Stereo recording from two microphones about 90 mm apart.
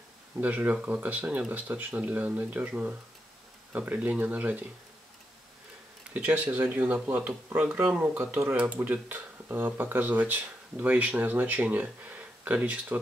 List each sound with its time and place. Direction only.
0.4 s speech: 15° right (ahead or behind)
6.1 s speech: 15° right (ahead or behind)